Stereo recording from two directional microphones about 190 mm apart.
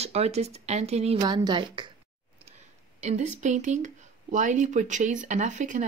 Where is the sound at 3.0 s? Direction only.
40° right (ahead or behind).